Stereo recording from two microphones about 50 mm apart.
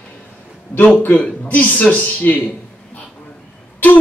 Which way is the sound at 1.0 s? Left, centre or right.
Left.